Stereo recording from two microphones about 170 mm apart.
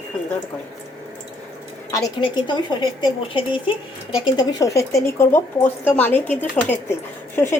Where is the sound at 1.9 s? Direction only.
25° left (ahead or behind).